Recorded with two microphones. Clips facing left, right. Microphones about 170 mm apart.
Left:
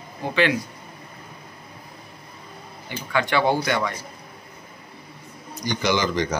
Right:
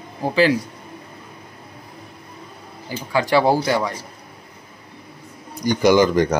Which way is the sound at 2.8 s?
35° right (ahead or behind).